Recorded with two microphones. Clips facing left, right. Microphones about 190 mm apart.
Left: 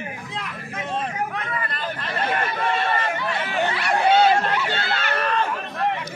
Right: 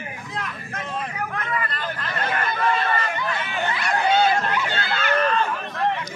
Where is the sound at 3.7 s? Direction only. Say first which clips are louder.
Left 2 dB; 75° left (ahead or behind).